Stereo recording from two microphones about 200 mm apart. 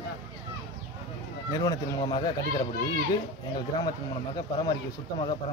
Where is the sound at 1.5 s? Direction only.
20° left (ahead or behind).